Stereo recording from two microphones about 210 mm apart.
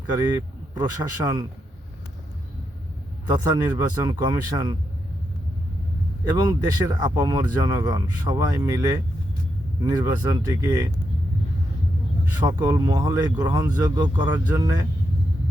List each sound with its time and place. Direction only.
0.8 s speech: 20° right (ahead or behind)
3.2 s speech: 20° right (ahead or behind)
6.3 s speech: 20° right (ahead or behind)
12.5 s speech: 20° right (ahead or behind)